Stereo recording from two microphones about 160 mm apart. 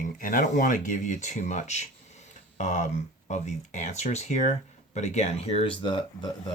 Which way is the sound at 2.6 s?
45° left (ahead or behind).